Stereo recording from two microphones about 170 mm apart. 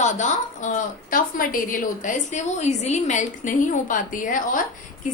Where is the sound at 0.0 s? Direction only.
45° left (ahead or behind).